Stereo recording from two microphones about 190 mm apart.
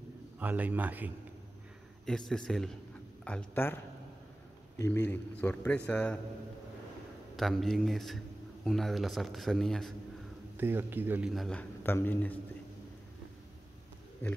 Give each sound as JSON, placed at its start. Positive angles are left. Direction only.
{"t": 0.4, "sound": "a man's voice", "side_deg": -10}
{"t": 2.0, "sound": "a man's voice", "side_deg": 5}
{"t": 7.3, "sound": "a man's voice", "side_deg": 0}
{"t": 10.6, "sound": "a man's voice", "side_deg": -10}